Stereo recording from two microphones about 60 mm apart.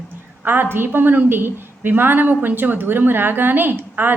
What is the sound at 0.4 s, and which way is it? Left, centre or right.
A woman's voice, right.